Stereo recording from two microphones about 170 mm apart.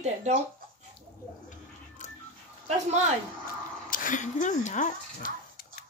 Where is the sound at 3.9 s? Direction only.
50° left (ahead or behind).